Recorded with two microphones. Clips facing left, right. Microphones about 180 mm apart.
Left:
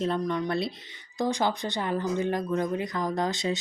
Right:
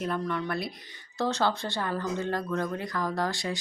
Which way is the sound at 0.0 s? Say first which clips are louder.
Left 3 dB; 20° left (ahead or behind).